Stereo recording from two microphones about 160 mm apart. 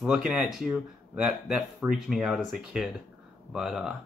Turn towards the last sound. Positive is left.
turn(degrees=0)  # may be behind; listen again after turning